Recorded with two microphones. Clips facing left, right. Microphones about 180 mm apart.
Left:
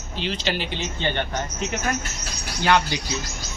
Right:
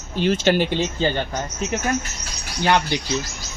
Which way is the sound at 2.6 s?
15° right (ahead or behind).